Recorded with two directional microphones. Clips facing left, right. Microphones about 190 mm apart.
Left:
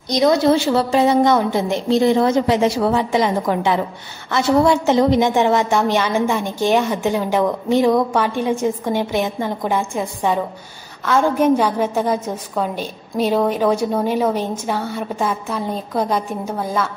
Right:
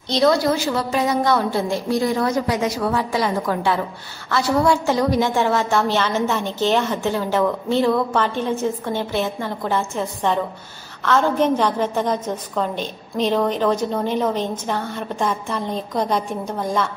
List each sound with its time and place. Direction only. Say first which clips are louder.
0.1 s a woman's voice: left 3 dB; 20° left (ahead or behind)